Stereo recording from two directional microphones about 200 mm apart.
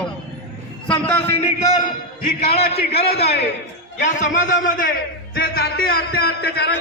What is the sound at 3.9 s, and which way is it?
A man's voice, 40° left (ahead or behind).